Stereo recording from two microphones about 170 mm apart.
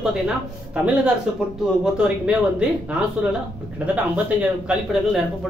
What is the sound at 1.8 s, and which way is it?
Speech, 5° right (ahead or behind).